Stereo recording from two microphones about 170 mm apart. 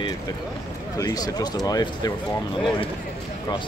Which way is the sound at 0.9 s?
20° left (ahead or behind).